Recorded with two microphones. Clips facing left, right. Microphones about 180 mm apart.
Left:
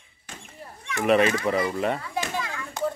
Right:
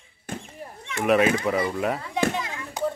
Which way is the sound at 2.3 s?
20° right (ahead or behind).